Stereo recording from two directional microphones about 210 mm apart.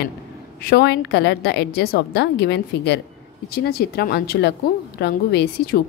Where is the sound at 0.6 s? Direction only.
50° left (ahead or behind).